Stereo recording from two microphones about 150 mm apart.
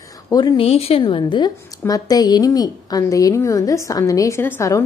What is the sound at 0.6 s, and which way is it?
A woman's voice, 40° left (ahead or behind).